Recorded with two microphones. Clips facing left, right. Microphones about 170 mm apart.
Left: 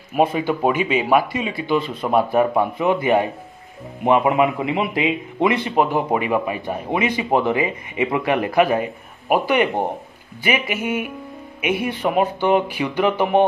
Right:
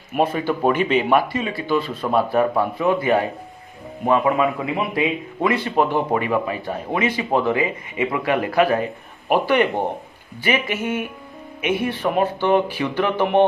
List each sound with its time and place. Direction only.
0.2 s a man's voice: 15° left (ahead or behind)